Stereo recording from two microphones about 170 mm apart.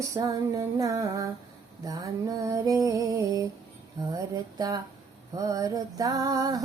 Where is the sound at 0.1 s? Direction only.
20° right (ahead or behind).